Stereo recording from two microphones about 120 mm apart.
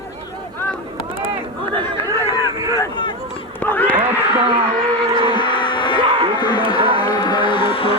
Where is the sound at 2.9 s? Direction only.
40° left (ahead or behind).